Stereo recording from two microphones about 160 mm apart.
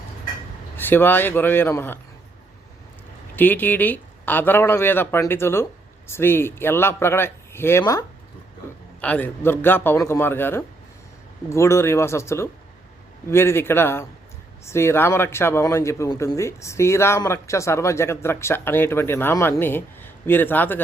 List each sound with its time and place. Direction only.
0.8 s a man's voice: 10° left (ahead or behind)
3.3 s a man's voice: 10° left (ahead or behind)
9.0 s a man's voice: 10° left (ahead or behind)